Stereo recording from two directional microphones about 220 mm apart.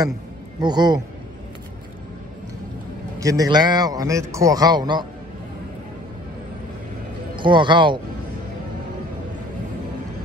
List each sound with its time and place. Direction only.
0.6 s speech: 20° right (ahead or behind)
3.2 s a man's voice: 15° right (ahead or behind)
7.3 s speech: 20° right (ahead or behind)